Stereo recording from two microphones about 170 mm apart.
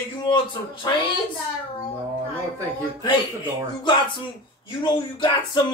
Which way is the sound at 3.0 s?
25° left (ahead or behind).